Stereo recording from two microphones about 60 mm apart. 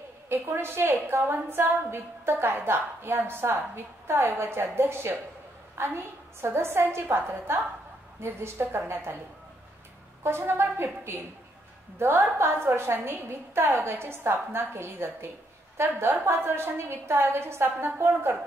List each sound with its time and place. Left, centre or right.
0.3 s a woman's voice: right
10.2 s a woman's voice: right
13.7 s a woman's voice: right
13.9 s a woman's voice: right